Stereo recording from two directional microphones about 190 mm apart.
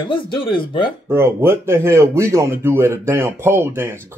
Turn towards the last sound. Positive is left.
turn(degrees=-15)  # may be behind; listen again after turning